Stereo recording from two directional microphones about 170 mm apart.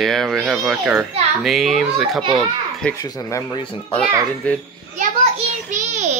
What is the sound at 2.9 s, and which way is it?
Speech, 20° left (ahead or behind).